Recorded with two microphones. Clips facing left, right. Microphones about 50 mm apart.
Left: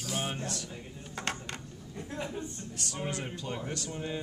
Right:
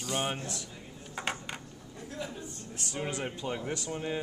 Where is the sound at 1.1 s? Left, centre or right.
Centre.